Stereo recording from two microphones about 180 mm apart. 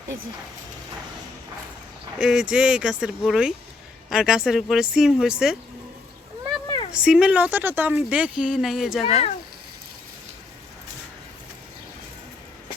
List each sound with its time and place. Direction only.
2.1 s speech: 5° right (ahead or behind)
6.9 s speech: 5° right (ahead or behind)
9.0 s speech: 35° left (ahead or behind)